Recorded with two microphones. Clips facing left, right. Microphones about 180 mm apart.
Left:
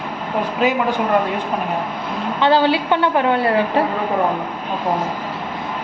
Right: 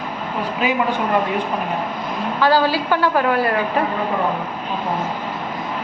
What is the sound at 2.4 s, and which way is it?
A woman's voice, 25° left (ahead or behind).